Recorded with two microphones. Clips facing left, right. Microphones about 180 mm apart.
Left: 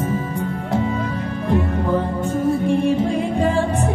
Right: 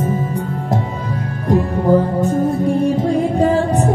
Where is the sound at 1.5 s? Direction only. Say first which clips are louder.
Right 6 dB; 40° right (ahead or behind).